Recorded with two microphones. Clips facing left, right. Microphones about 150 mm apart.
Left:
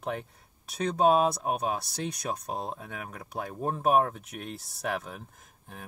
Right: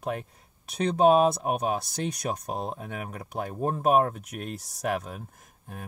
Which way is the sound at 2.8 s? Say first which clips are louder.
Right 4 dB; 55° right (ahead or behind).